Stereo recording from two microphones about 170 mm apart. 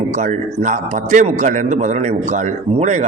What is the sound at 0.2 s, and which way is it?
A man's voice, 45° right (ahead or behind).